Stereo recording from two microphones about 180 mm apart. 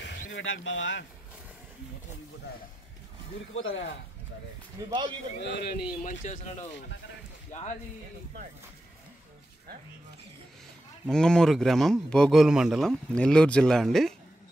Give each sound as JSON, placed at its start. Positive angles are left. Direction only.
{"t": 0.3, "sound": "speech", "side_deg": 90}
{"t": 3.5, "sound": "speech", "side_deg": 90}
{"t": 4.8, "sound": "a man's voice", "side_deg": -25}
{"t": 5.4, "sound": "speech", "side_deg": 70}
{"t": 6.0, "sound": "speech", "side_deg": 40}
{"t": 11.1, "sound": "a man's voice", "side_deg": 5}